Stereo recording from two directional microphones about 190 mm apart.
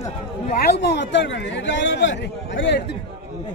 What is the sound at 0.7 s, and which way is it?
A man's voice, 65° left (ahead or behind).